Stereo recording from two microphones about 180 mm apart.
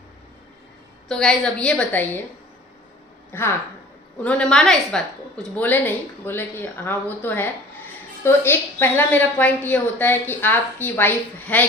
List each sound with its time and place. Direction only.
1.0 s a woman's voice: 5° left (ahead or behind)
3.3 s a woman's voice: 10° left (ahead or behind)